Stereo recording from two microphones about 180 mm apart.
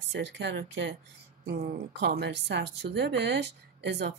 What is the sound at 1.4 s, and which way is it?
A woman's voice, 60° right (ahead or behind).